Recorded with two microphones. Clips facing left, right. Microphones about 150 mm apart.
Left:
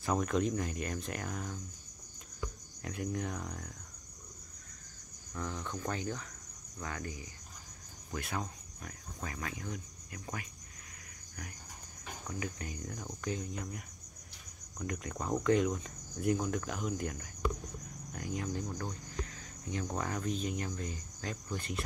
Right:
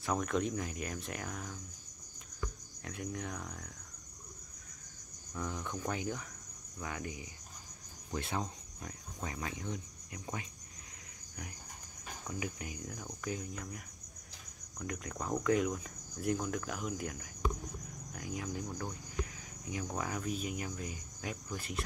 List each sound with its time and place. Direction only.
0.0 s cricket: centre (ahead or behind)
2.8 s cricket: centre (ahead or behind)
5.3 s insect: 10° right (ahead or behind)
8.1 s speech: 25° right (ahead or behind)
12.3 s cricket: 10° right (ahead or behind)
18.1 s speech: centre (ahead or behind)